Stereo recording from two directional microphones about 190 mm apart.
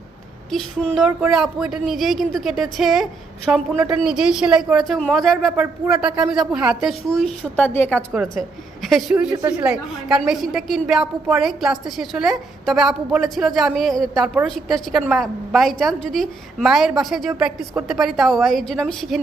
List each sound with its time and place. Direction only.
0.5 s a woman's voice: 5° left (ahead or behind)
8.1 s speech: centre (ahead or behind)
9.3 s speech: 15° right (ahead or behind)
9.6 s speech: 5° right (ahead or behind)